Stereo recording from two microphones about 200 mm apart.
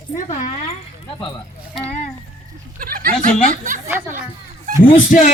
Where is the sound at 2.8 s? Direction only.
45° right (ahead or behind).